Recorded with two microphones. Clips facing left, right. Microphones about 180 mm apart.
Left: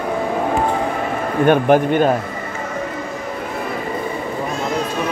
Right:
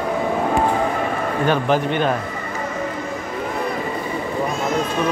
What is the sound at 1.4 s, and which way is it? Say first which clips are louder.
Speech: left 6 dB; 55° left (ahead or behind).